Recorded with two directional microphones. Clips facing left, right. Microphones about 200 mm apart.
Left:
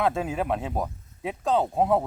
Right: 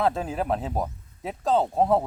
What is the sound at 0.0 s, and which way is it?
Speech, centre (ahead or behind).